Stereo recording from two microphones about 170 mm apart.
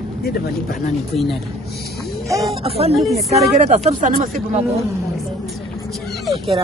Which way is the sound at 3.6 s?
50° right (ahead or behind).